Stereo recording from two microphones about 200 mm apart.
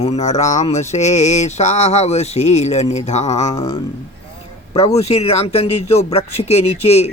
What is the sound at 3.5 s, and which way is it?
Speech, 20° left (ahead or behind).